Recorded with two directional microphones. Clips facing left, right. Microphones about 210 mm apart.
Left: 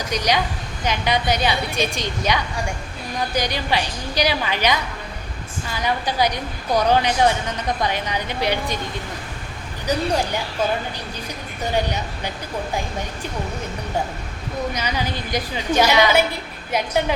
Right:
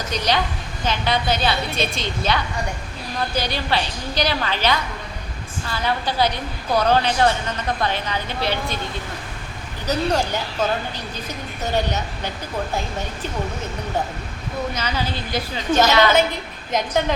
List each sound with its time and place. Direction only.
0.1 s a woman's voice: 15° left (ahead or behind)
9.8 s a woman's voice: 10° left (ahead or behind)
14.7 s a woman's voice: 15° left (ahead or behind)